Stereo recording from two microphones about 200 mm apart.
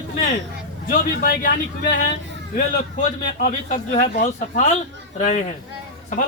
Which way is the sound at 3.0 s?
40° left (ahead or behind).